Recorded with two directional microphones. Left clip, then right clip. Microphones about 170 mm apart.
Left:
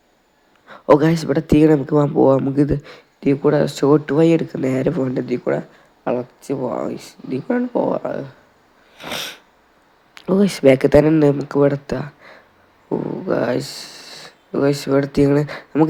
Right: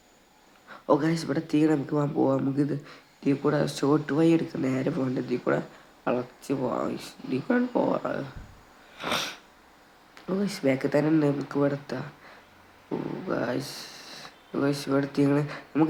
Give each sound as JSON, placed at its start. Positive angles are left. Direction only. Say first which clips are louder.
{"t": 0.7, "sound": "speech", "louder": "left 11 dB", "side_deg": 35}
{"t": 9.0, "sound": "sneeze", "louder": "left 2 dB", "side_deg": 15}
{"t": 10.2, "sound": "speech", "louder": "left 13 dB", "side_deg": 35}